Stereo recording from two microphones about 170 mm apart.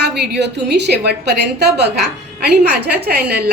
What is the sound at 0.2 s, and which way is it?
A woman's voice, 85° right.